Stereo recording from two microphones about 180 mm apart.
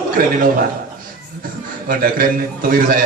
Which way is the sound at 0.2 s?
55° right (ahead or behind).